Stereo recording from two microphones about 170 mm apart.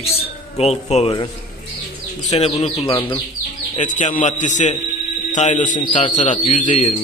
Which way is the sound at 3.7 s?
45° left (ahead or behind).